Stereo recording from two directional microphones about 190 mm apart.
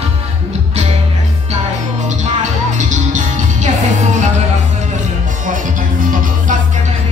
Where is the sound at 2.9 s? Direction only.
40° right (ahead or behind).